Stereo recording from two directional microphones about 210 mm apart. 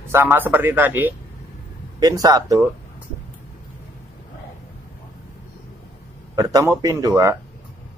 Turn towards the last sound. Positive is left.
turn(degrees=-15)  # may be behind; listen again after turning